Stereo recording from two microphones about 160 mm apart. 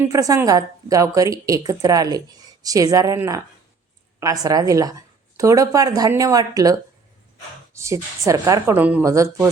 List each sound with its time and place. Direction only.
0.0 s a woman's voice: 20° right (ahead or behind)